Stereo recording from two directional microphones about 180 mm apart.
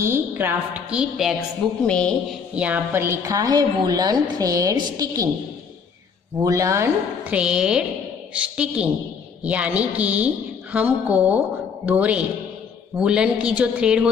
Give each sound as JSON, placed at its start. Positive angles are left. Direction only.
{"t": 0.0, "sound": "a woman's voice", "side_deg": -10}
{"t": 2.5, "sound": "a woman's voice", "side_deg": -10}
{"t": 6.4, "sound": "a woman's voice", "side_deg": -15}